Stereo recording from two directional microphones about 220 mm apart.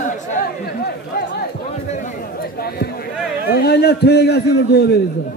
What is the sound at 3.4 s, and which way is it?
A man's voice, 45° left (ahead or behind).